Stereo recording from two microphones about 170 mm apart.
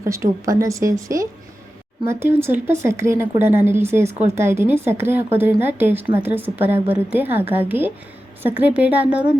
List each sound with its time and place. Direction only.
0.0 s speech: 15° right (ahead or behind)